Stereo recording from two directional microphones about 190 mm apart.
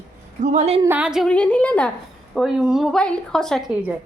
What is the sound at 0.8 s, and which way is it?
A woman's voice, 10° right (ahead or behind).